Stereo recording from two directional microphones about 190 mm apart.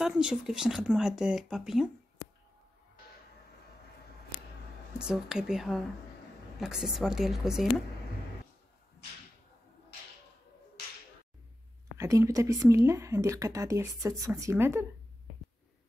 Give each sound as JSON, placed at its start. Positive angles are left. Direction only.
{"t": 0.0, "sound": "speech", "side_deg": -5}
{"t": 4.9, "sound": "speech", "side_deg": -5}
{"t": 12.0, "sound": "speech", "side_deg": -15}